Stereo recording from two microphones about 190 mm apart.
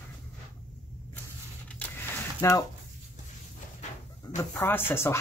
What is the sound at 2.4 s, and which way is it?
Speech, 15° left (ahead or behind).